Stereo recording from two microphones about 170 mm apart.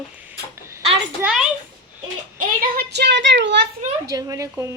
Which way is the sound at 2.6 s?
70° right (ahead or behind).